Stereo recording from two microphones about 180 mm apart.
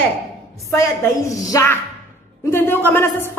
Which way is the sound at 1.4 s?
15° left (ahead or behind).